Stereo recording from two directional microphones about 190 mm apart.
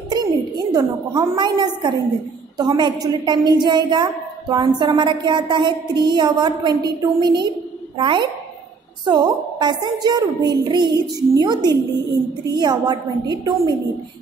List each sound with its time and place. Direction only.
0.1 s a woman's voice: 20° right (ahead or behind)